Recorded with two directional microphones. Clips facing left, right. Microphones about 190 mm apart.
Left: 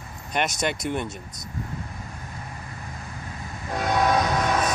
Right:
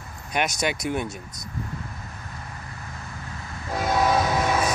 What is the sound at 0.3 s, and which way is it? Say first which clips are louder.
Speech: even; 5° right (ahead or behind).